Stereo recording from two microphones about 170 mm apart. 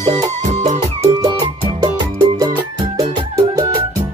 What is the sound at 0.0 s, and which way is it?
Music, 40° right (ahead or behind).